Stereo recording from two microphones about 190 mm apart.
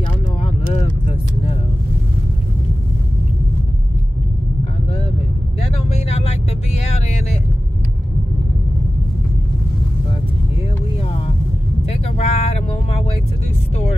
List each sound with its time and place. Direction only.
0.4 s vehicle: 35° left (ahead or behind)
5.6 s vehicle: 30° left (ahead or behind)
11.9 s vehicle: 35° left (ahead or behind)